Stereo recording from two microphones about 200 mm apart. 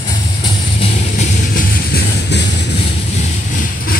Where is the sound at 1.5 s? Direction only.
55° left (ahead or behind).